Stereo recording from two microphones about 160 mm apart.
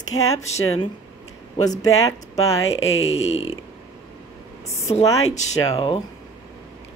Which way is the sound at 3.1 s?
40° left (ahead or behind).